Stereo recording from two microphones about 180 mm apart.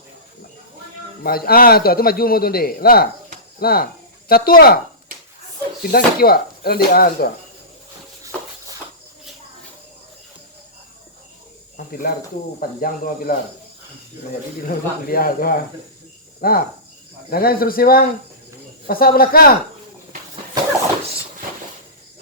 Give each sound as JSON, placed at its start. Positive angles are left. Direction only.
{"t": 1.2, "sound": "a man's voice", "side_deg": 55}
{"t": 5.8, "sound": "a man's voice", "side_deg": 55}
{"t": 11.9, "sound": "speech", "side_deg": 55}
{"t": 14.7, "sound": "a man's voice", "side_deg": 55}